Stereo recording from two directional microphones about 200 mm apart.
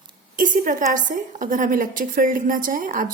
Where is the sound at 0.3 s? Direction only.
45° right (ahead or behind).